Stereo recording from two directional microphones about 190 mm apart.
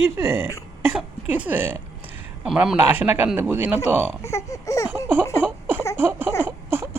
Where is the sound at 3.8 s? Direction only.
10° right (ahead or behind).